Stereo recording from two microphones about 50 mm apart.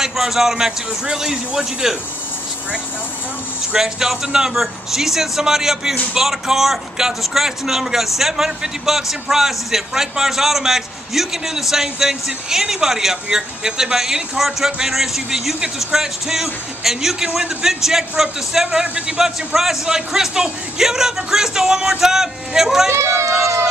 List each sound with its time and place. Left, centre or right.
0.0 s a man's voice: centre
3.7 s a man's voice: centre
18.7 s a man's voice: right
19.2 s a man's voice: centre
22.8 s speech: right